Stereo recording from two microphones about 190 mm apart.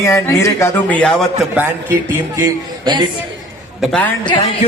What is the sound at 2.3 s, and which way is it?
Speech, 20° right (ahead or behind).